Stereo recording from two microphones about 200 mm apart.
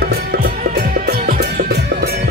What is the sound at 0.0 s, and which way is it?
Music, 50° right (ahead or behind).